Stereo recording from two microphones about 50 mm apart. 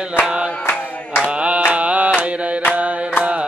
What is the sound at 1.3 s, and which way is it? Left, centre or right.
Mantra, right.